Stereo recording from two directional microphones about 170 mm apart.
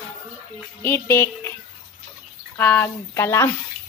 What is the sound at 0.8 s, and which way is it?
Music, 15° left (ahead or behind).